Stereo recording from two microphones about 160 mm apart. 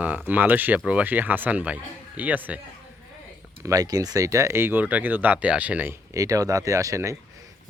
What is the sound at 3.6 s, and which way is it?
Speech, 20° right (ahead or behind).